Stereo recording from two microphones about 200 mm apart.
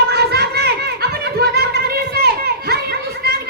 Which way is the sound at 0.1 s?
55° right (ahead or behind).